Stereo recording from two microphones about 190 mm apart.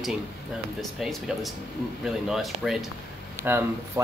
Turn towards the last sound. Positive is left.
turn(degrees=-10)  # may be behind; listen again after turning